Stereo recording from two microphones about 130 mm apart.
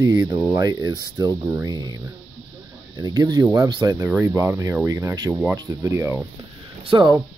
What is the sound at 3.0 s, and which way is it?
Speech, 30° right (ahead or behind).